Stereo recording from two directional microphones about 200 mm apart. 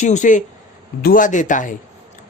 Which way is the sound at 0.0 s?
35° left (ahead or behind).